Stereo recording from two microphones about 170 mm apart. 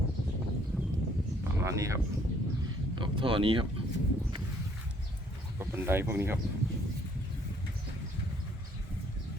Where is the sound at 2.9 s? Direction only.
30° right (ahead or behind).